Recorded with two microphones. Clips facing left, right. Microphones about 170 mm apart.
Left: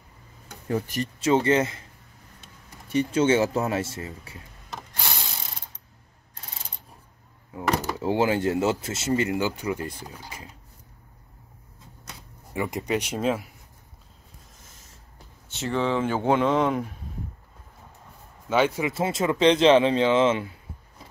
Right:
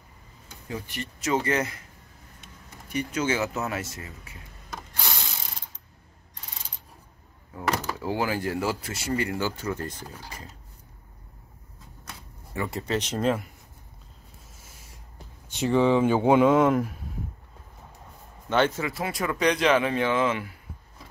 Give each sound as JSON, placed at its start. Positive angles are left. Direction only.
{"t": 0.5, "sound": "a sound", "side_deg": 50}
{"t": 1.2, "sound": "speech", "side_deg": 30}
{"t": 2.9, "sound": "speech", "side_deg": 30}
{"t": 7.9, "sound": "speech", "side_deg": 25}
{"t": 12.5, "sound": "speech", "side_deg": 15}
{"t": 14.6, "sound": "a sound", "side_deg": -10}
{"t": 15.4, "sound": "speech", "side_deg": -15}
{"t": 18.5, "sound": "speech", "side_deg": 10}
{"t": 18.9, "sound": "speech", "side_deg": 25}